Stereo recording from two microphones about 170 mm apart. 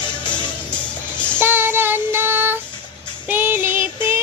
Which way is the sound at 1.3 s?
10° right (ahead or behind).